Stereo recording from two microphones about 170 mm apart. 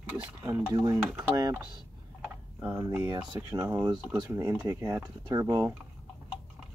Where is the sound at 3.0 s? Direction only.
25° right (ahead or behind).